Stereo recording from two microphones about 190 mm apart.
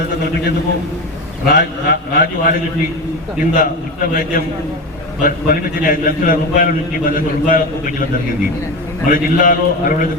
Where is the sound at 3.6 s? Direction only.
45° left (ahead or behind).